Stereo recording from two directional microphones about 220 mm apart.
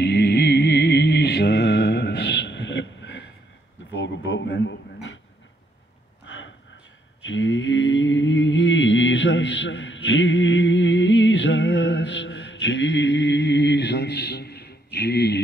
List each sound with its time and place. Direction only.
0.0 s mantra: 50° left (ahead or behind)
3.9 s speech: 55° left (ahead or behind)
6.2 s a sound: 55° left (ahead or behind)
7.2 s mantra: 60° left (ahead or behind)